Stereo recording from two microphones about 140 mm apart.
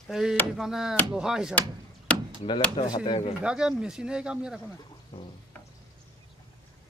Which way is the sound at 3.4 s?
5° right (ahead or behind).